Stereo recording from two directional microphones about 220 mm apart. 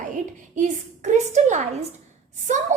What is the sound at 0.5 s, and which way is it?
A woman's voice, 35° right (ahead or behind).